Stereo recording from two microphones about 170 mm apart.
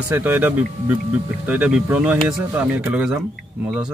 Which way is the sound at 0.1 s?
10° right (ahead or behind).